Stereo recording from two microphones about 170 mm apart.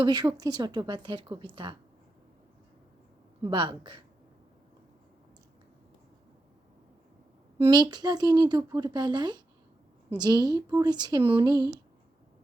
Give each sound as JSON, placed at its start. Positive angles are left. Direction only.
{"t": 0.0, "sound": "speech", "side_deg": -25}
{"t": 3.4, "sound": "speech", "side_deg": -30}
{"t": 7.7, "sound": "speech", "side_deg": -25}